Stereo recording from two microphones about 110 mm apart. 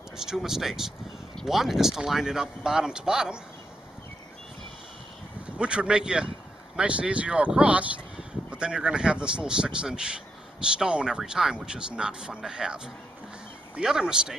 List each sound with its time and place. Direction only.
0.2 s speech: 5° right (ahead or behind)
5.6 s speech: 10° right (ahead or behind)